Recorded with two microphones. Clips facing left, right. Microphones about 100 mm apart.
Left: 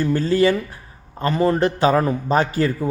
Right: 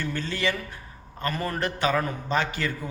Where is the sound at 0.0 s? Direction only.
35° left (ahead or behind).